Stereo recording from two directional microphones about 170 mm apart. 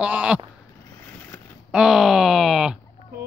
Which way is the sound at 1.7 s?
5° right (ahead or behind).